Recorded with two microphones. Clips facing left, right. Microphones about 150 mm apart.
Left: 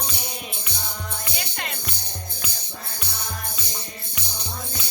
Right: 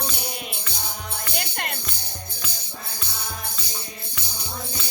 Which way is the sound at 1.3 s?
55° right (ahead or behind).